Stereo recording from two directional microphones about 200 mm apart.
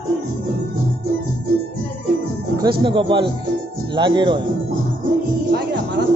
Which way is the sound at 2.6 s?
25° right (ahead or behind).